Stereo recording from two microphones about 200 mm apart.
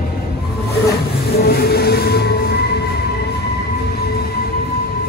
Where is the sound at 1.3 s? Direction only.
50° left (ahead or behind).